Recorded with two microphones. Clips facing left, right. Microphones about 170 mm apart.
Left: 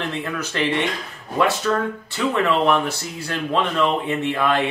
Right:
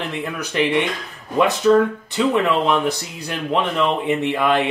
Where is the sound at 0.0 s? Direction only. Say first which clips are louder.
Even; 15° right (ahead or behind).